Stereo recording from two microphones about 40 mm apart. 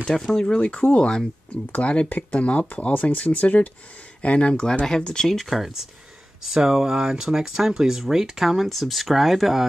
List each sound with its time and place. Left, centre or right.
0.3 s speech: centre
0.6 s speech: left
1.7 s speech: left
4.2 s speech: left; by 5.5 s centre
6.4 s speech: centre